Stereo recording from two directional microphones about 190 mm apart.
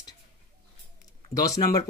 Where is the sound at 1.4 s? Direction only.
20° left (ahead or behind).